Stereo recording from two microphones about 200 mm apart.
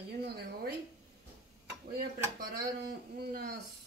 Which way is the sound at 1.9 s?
50° right (ahead or behind).